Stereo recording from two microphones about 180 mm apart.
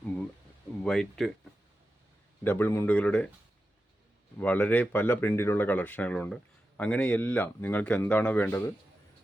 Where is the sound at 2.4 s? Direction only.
10° left (ahead or behind).